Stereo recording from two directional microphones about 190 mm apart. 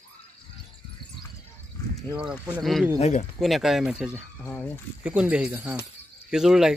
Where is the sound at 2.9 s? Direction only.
35° left (ahead or behind).